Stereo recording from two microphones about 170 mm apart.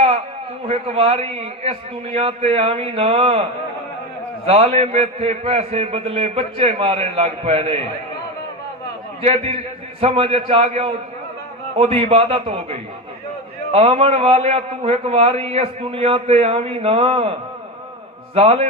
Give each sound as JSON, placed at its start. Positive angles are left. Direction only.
{"t": 0.7, "sound": "a man's voice", "side_deg": -35}
{"t": 4.4, "sound": "a man's voice", "side_deg": -35}
{"t": 9.2, "sound": "a man's voice", "side_deg": -35}
{"t": 18.3, "sound": "a man's voice", "side_deg": -35}